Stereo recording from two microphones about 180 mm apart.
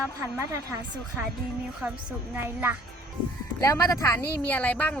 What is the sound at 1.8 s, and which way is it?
Speech, 10° right (ahead or behind).